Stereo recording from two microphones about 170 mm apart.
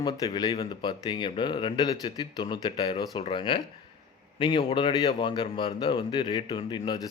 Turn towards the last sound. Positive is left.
turn(degrees=25)  # may be behind; listen again after turning